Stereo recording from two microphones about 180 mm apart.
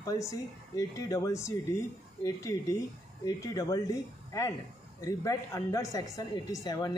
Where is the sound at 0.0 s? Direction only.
20° left (ahead or behind).